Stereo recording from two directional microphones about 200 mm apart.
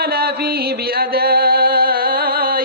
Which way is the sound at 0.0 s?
50° right (ahead or behind).